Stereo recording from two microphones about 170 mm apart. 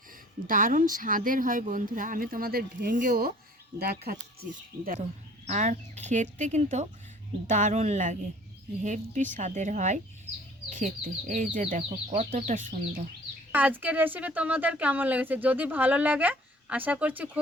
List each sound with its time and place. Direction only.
0.4 s speech: 55° right (ahead or behind)
5.5 s speech: 45° right (ahead or behind)
13.5 s speech: 10° right (ahead or behind)